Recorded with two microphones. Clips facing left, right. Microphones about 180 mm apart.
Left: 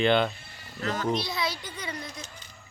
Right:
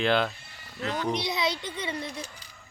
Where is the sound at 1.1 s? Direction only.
20° right (ahead or behind).